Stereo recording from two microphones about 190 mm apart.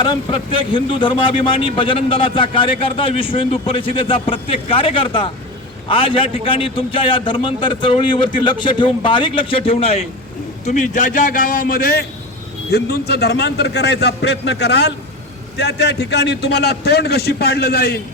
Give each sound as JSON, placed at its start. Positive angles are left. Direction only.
{"t": 0.0, "sound": "a man's voice", "side_deg": 25}
{"t": 10.7, "sound": "a man's voice", "side_deg": 40}